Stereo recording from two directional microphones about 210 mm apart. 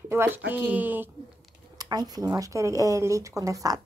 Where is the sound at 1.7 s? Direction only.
20° right (ahead or behind).